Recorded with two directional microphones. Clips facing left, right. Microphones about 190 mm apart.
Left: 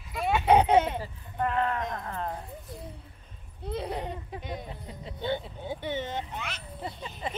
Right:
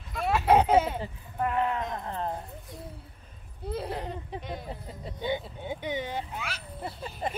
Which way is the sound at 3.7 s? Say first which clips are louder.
Even; centre (ahead or behind).